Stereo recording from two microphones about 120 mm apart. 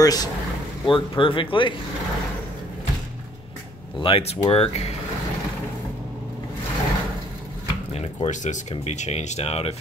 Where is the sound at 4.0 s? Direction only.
55° left (ahead or behind).